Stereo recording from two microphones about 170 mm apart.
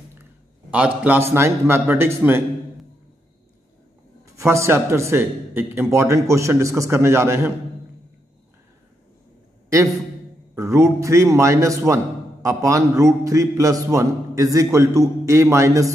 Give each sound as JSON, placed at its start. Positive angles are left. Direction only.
{"t": 0.1, "sound": "a sound", "side_deg": -10}
{"t": 1.3, "sound": "a man's voice", "side_deg": -15}
{"t": 4.4, "sound": "a man's voice", "side_deg": -15}
{"t": 10.5, "sound": "a man's voice", "side_deg": -15}